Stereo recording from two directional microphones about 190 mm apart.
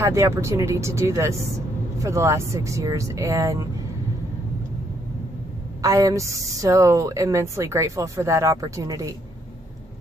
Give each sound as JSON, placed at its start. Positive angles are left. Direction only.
{"t": 0.0, "sound": "a woman's voice", "side_deg": -15}
{"t": 5.8, "sound": "a woman's voice", "side_deg": -15}